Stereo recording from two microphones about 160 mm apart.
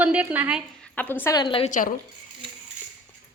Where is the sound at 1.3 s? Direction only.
30° left (ahead or behind).